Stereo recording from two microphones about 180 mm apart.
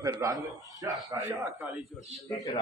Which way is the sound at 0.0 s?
20° right (ahead or behind).